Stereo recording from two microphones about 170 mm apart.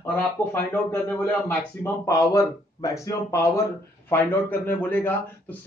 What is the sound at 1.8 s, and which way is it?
A man's voice, 20° left (ahead or behind).